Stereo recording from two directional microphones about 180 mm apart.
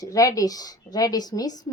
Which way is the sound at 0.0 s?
20° left (ahead or behind).